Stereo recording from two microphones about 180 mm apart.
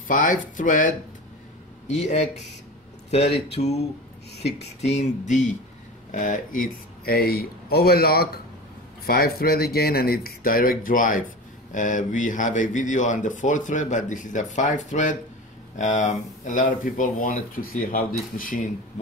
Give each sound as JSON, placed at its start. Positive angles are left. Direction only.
{"t": 0.1, "sound": "speech", "side_deg": 45}
{"t": 1.9, "sound": "speech", "side_deg": 40}